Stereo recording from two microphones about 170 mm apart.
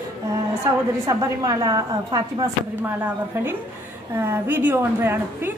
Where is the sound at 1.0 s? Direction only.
20° right (ahead or behind).